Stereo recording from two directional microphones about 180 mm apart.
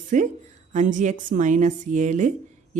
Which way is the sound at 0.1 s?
45° right (ahead or behind).